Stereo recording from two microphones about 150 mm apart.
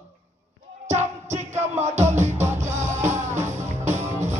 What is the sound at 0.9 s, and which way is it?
Music, 50° right (ahead or behind).